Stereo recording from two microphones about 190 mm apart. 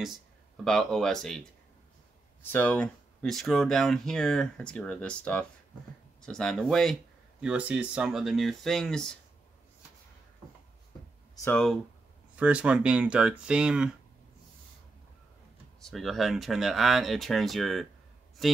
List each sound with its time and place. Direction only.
0.7 s speech: centre (ahead or behind)
11.5 s speech: centre (ahead or behind)
15.8 s speech: centre (ahead or behind)